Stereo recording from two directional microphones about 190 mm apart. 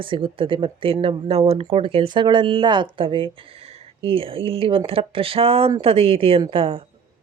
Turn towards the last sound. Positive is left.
turn(degrees=-30)  # may be behind; listen again after turning